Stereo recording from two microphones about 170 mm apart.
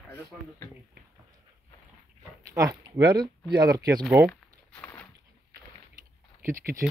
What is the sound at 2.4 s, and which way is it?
Speech, 20° right (ahead or behind).